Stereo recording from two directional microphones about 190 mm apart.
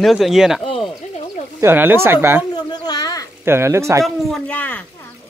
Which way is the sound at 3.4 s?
15° right (ahead or behind).